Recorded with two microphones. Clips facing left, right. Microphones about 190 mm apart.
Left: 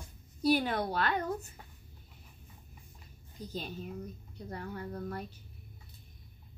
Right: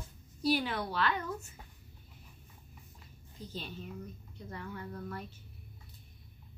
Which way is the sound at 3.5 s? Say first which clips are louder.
Left 3 dB; 40° left (ahead or behind).